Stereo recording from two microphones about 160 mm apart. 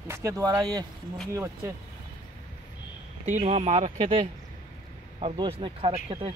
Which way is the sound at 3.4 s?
45° right (ahead or behind).